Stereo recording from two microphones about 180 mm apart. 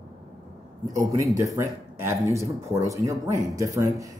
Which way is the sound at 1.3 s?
15° right (ahead or behind).